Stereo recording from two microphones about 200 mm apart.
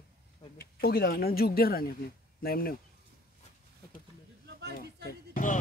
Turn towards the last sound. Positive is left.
turn(degrees=40)  # may be behind; listen again after turning